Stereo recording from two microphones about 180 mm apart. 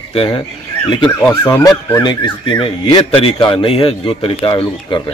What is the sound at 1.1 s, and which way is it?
Speech, 15° left (ahead or behind).